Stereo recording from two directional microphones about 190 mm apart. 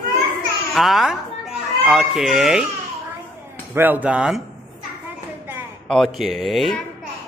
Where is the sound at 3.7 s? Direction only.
10° right (ahead or behind).